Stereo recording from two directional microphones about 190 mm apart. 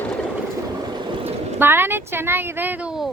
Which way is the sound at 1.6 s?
10° right (ahead or behind).